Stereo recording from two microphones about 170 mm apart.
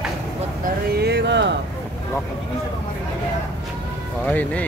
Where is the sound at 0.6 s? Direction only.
70° right (ahead or behind); by 1.5 s 90° right.